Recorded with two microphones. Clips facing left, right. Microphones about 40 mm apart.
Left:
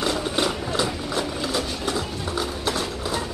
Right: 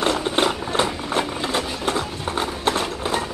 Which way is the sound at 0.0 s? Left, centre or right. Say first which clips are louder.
Right 3 dB; right.